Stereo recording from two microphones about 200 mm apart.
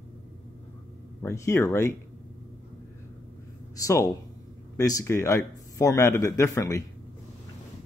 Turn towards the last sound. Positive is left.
turn(degrees=15)  # may be behind; listen again after turning